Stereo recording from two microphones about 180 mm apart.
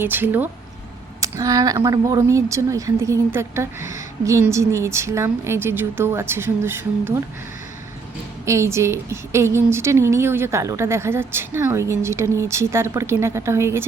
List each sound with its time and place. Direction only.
0.0 s a woman's voice: 10° right (ahead or behind)
8.4 s a woman's voice: 15° right (ahead or behind)